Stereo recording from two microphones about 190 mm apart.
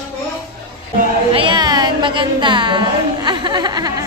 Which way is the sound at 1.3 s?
25° right (ahead or behind).